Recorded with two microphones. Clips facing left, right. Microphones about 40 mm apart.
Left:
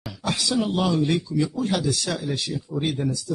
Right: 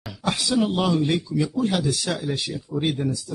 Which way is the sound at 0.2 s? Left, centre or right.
Centre.